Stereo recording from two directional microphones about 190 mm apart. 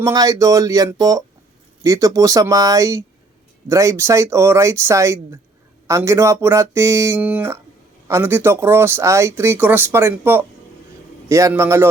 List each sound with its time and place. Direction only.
0.0 s speech: 20° right (ahead or behind)